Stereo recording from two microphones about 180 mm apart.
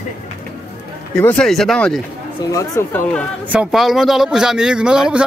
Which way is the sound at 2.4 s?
20° left (ahead or behind).